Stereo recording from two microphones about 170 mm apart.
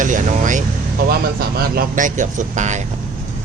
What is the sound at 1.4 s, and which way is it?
Speech, 60° right (ahead or behind).